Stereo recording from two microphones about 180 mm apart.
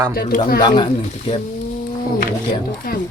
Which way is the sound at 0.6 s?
25° left (ahead or behind).